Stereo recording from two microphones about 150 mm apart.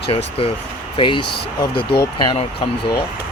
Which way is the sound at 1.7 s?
90° left.